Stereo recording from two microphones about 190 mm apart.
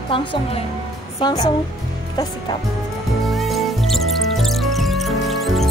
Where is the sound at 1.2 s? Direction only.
20° left (ahead or behind).